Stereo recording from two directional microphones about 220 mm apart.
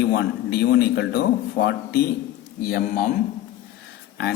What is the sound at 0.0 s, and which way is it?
A man's voice, 50° left (ahead or behind).